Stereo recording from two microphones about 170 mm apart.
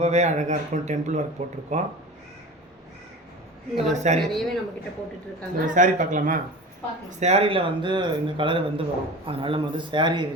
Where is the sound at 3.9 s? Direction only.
45° right (ahead or behind).